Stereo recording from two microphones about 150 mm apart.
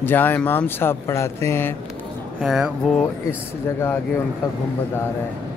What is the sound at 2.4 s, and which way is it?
Speech, centre (ahead or behind).